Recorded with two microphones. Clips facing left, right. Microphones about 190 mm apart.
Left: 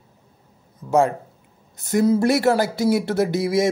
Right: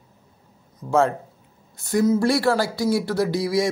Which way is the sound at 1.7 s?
20° left (ahead or behind).